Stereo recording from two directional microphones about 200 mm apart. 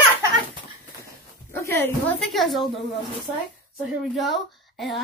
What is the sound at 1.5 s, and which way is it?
Dog, 10° left (ahead or behind).